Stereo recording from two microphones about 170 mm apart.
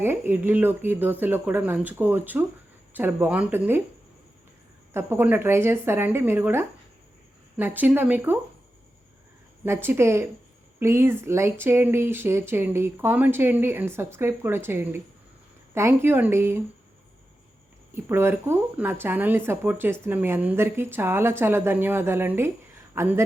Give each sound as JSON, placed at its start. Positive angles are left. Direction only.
{"t": 0.0, "sound": "speech", "side_deg": -15}
{"t": 4.9, "sound": "speech", "side_deg": -15}
{"t": 9.6, "sound": "speech", "side_deg": -15}
{"t": 17.9, "sound": "speech", "side_deg": -15}